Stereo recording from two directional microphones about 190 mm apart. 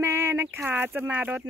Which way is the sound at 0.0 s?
10° right (ahead or behind).